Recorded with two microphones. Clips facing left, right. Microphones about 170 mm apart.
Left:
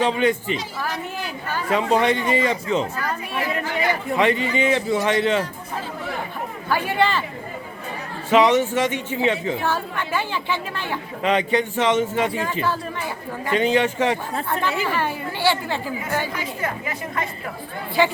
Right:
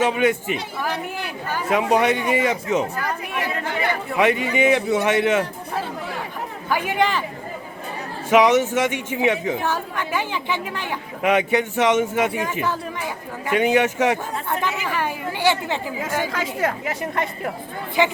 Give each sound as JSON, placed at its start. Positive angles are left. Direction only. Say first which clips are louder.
{"t": 0.0, "sound": "a woman's voice", "louder": "right 1 dB", "side_deg": -10}
{"t": 6.7, "sound": "a woman's voice", "louder": "even", "side_deg": -15}
{"t": 8.3, "sound": "a woman's voice", "louder": "right 1 dB", "side_deg": -10}
{"t": 16.3, "sound": "a woman's voice", "louder": "right 4 dB", "side_deg": -85}
{"t": 18.0, "sound": "a woman's voice", "louder": "even", "side_deg": -15}